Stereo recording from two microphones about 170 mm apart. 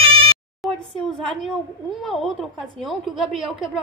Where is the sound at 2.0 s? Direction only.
Centre (ahead or behind).